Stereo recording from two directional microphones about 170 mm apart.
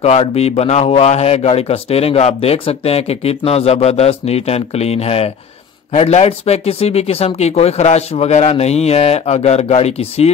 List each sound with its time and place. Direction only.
0.0 s a man's voice: 35° left (ahead or behind)